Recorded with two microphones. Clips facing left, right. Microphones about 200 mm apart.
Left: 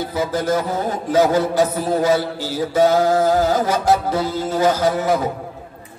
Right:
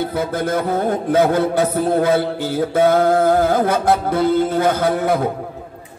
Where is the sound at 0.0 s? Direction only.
60° right (ahead or behind).